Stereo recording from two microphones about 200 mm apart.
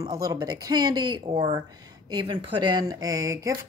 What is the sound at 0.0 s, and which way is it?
Speech, 20° right (ahead or behind).